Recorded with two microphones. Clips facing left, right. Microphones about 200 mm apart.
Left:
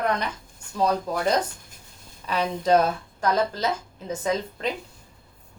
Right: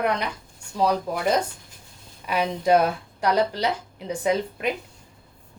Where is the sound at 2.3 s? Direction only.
10° right (ahead or behind).